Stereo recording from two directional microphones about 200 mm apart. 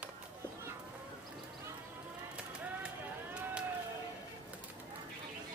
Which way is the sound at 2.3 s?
5° right (ahead or behind).